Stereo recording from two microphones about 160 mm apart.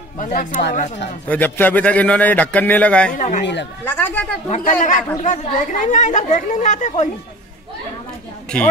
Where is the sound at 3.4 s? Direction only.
90° left.